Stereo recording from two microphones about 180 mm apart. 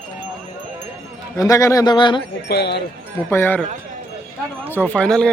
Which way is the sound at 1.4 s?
20° left (ahead or behind).